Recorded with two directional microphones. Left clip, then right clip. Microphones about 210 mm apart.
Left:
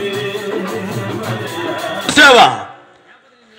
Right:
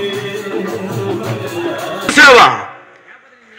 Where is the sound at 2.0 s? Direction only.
45° left (ahead or behind).